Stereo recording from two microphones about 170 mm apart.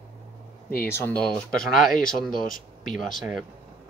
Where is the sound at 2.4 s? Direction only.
55° left (ahead or behind).